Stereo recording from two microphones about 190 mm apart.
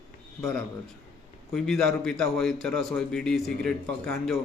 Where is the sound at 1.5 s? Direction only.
5° left (ahead or behind).